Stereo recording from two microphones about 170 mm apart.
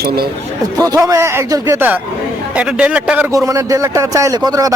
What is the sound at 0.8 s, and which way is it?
Speech, 20° right (ahead or behind).